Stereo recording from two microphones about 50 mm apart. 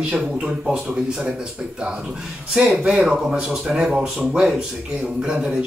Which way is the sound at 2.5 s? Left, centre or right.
Right.